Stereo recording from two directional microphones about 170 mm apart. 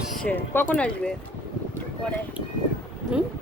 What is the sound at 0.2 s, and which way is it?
Speech, 10° left (ahead or behind).